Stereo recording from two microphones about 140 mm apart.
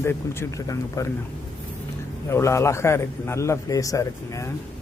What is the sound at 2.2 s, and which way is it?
Speech, 20° left (ahead or behind).